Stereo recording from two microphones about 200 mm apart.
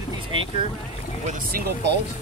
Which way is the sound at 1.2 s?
50° right (ahead or behind).